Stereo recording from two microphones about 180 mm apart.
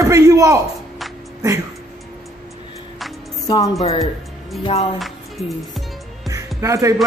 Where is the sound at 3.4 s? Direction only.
20° left (ahead or behind).